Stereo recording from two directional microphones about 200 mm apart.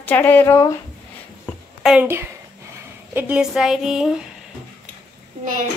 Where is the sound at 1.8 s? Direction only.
5° right (ahead or behind).